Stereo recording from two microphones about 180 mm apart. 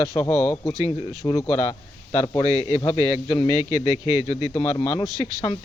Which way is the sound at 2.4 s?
35° left (ahead or behind).